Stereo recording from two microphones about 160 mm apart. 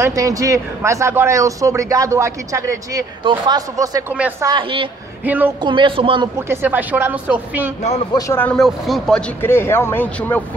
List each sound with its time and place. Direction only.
0.0 s a man's voice: 20° right (ahead or behind)
5.2 s speech: 10° right (ahead or behind)
5.6 s a woman's voice: 30° right (ahead or behind)
6.3 s speech: 15° right (ahead or behind)
8.3 s speech: 10° left (ahead or behind)
8.5 s speech: centre (ahead or behind)
9.4 s speech: 15° left (ahead or behind)